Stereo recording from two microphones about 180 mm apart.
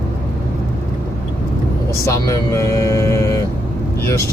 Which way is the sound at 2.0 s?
15° left (ahead or behind).